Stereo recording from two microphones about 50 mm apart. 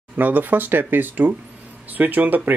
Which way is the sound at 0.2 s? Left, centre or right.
Right.